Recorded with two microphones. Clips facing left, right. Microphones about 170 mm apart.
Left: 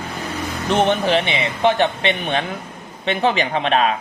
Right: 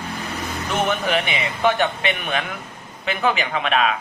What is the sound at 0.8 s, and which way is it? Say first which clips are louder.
Speech: left 4 dB; 30° left (ahead or behind).